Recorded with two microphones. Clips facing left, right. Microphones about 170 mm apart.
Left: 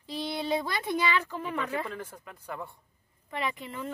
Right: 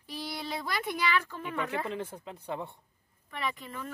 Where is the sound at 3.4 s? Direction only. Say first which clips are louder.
Left 2 dB; 20° left (ahead or behind).